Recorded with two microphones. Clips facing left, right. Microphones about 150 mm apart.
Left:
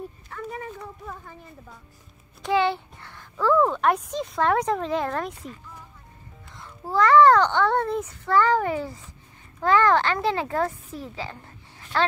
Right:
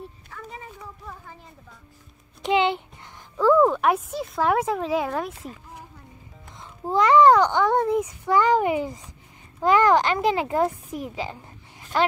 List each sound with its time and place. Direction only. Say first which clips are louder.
0.3 s a sound: left 9 dB; 55° left (ahead or behind)
2.4 s a woman's voice: right 1 dB; 20° right (ahead or behind); by 5.5 s 5° right (ahead or behind)
6.6 s a child's voice: right 1 dB; 20° right (ahead or behind)